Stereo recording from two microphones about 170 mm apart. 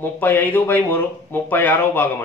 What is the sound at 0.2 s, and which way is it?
Speech, 10° left (ahead or behind).